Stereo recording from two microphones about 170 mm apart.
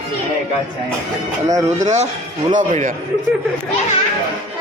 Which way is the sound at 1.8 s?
40° right (ahead or behind).